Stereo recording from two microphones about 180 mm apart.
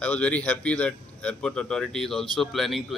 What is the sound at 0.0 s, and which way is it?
Speech, 5° left (ahead or behind).